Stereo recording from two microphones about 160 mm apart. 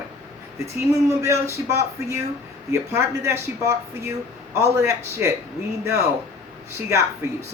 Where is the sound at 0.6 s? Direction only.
15° right (ahead or behind).